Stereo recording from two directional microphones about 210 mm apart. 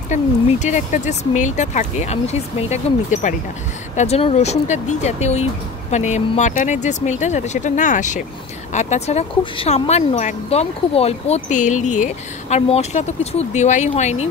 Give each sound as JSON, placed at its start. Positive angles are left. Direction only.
{"t": 0.1, "sound": "speech", "side_deg": 35}